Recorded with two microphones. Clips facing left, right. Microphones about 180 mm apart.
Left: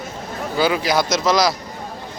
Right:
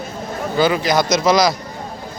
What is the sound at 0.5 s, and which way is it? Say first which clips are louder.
Speech: right 2 dB; 5° left (ahead or behind).